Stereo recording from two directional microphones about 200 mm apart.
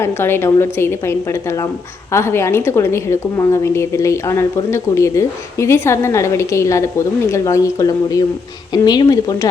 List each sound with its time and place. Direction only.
0.0 s a woman's voice: 10° left (ahead or behind)